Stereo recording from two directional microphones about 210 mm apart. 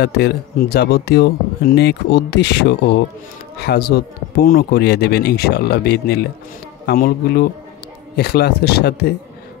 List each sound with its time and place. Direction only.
0.0 s speech: 50° left (ahead or behind)